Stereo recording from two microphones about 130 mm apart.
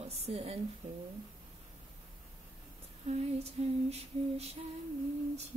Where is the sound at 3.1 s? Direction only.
55° right (ahead or behind).